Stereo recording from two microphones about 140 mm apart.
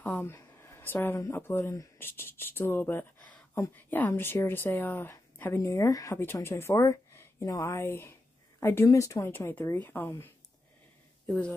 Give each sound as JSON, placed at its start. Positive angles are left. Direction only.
{"t": 0.0, "sound": "a woman's voice", "side_deg": 15}